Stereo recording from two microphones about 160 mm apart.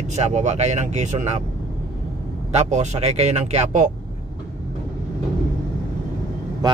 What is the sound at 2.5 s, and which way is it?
Speech, 45° right (ahead or behind).